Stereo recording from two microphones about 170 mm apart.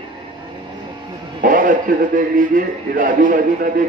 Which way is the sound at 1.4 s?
50° right (ahead or behind).